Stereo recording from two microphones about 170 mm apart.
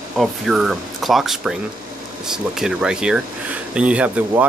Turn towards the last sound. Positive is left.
turn(degrees=-5)  # may be behind; listen again after turning